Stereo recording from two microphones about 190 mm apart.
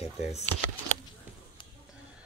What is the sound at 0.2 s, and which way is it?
Speech, 35° left (ahead or behind).